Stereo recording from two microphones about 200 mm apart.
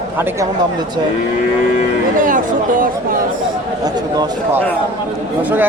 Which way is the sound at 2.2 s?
40° right (ahead or behind).